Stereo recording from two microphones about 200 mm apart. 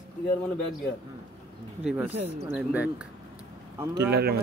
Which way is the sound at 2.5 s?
5° right (ahead or behind).